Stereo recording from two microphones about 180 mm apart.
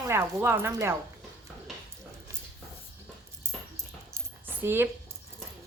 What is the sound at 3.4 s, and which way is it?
Dog, 15° right (ahead or behind).